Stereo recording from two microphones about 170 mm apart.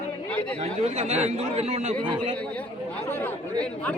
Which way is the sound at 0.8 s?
40° right (ahead or behind).